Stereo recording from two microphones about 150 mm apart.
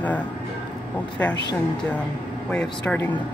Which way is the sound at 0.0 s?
10° left (ahead or behind).